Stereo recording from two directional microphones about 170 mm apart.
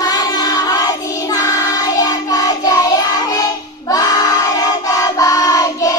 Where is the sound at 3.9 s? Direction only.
25° left (ahead or behind).